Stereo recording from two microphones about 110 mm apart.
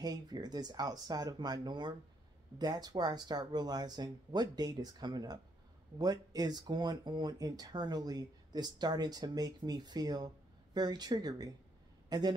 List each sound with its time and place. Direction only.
0.0 s speech: 35° right (ahead or behind)